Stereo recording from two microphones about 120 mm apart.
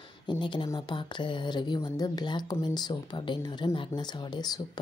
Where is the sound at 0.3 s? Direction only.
40° left (ahead or behind).